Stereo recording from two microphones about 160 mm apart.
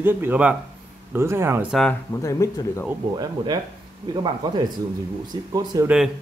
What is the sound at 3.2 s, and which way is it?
Speech, 25° right (ahead or behind).